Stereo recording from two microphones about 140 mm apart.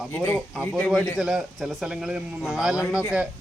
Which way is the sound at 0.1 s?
15° left (ahead or behind).